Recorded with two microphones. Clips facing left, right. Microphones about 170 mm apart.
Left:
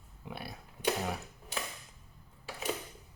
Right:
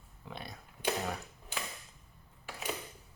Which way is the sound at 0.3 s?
5° left (ahead or behind).